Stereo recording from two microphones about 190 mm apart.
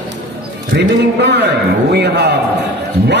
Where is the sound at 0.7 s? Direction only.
65° right (ahead or behind).